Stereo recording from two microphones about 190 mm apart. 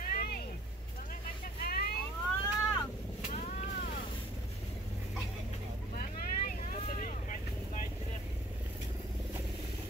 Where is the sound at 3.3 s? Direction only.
40° left (ahead or behind).